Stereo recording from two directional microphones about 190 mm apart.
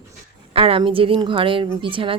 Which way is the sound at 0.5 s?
30° right (ahead or behind).